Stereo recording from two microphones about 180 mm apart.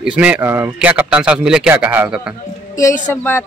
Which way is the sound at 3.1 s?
10° left (ahead or behind).